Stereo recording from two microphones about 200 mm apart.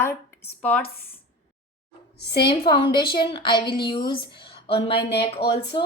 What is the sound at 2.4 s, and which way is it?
Speech, 25° left (ahead or behind).